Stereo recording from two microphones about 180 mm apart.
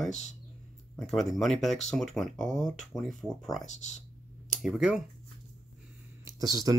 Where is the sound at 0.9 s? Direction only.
Centre (ahead or behind).